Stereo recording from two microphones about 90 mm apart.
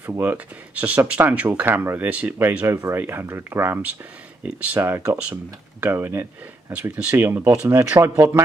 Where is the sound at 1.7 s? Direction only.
25° right (ahead or behind).